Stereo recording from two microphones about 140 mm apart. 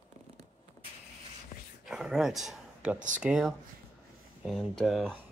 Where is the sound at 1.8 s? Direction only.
5° right (ahead or behind).